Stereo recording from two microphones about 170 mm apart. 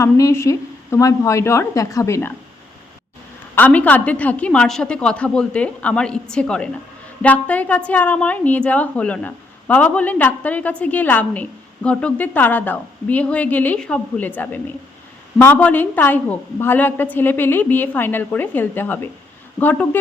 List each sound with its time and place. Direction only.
0.0 s a woman's voice: 20° left (ahead or behind)
3.5 s a woman's voice: 10° left (ahead or behind)